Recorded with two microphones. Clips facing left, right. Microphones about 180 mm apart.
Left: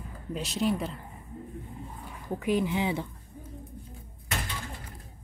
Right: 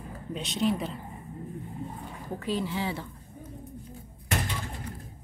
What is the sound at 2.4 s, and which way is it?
Speech, 15° left (ahead or behind).